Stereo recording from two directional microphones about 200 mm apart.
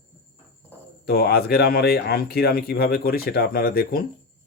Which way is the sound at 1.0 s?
50° left (ahead or behind).